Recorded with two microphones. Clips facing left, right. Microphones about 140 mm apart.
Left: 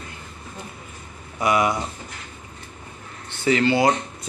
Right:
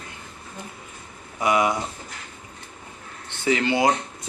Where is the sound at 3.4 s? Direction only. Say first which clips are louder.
Left 2 dB; 20° right (ahead or behind).